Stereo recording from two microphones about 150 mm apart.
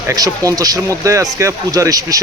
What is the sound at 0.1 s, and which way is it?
Speech, 25° right (ahead or behind).